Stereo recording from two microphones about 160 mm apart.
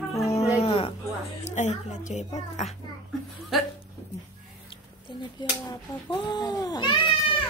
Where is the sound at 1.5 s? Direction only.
45° left (ahead or behind).